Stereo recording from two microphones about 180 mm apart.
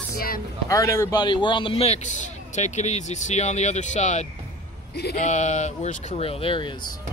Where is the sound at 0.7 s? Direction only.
15° left (ahead or behind).